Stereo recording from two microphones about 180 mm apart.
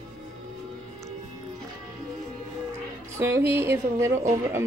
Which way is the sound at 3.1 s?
15° right (ahead or behind).